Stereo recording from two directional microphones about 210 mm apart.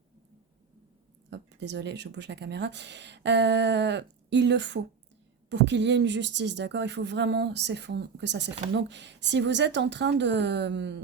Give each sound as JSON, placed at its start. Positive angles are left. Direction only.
{"t": 1.3, "sound": "speech", "side_deg": -55}